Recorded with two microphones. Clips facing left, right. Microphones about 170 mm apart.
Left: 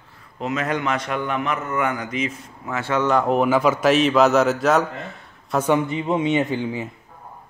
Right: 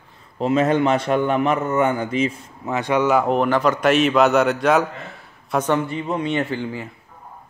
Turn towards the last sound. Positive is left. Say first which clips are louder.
# left 2 dB
turn(degrees=15)  # may be behind; listen again after turning